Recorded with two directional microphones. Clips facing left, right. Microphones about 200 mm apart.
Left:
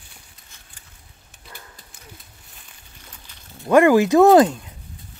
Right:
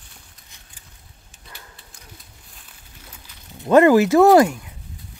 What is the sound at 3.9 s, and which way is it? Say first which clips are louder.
Speech: even; 15° left (ahead or behind).